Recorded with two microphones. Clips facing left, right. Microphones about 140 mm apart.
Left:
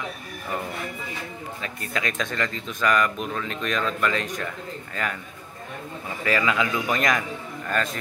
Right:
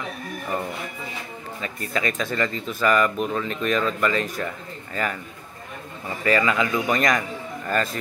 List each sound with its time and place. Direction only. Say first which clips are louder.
1.6 s speech: right 4 dB; centre (ahead or behind)
6.2 s speech: right 2 dB; centre (ahead or behind)